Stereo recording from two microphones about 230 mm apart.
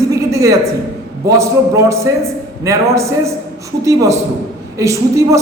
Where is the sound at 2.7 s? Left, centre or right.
Centre.